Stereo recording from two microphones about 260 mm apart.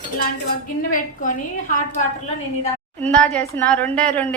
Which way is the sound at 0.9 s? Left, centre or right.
Left.